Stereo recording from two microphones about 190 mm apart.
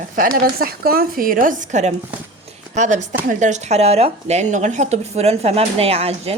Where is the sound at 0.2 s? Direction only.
50° right (ahead or behind).